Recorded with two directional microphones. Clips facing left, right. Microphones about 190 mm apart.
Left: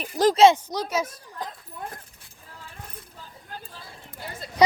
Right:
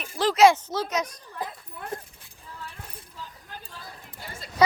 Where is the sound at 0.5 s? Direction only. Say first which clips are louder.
Left 1 dB; 15° left (ahead or behind).